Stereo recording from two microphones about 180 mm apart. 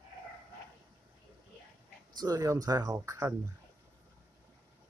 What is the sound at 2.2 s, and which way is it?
Speech, 20° right (ahead or behind).